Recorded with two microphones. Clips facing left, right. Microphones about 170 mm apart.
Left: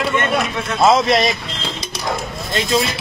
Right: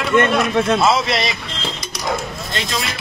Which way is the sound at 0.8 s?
45° left (ahead or behind).